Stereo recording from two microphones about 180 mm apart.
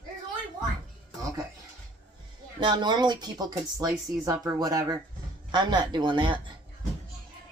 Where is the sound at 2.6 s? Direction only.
25° right (ahead or behind).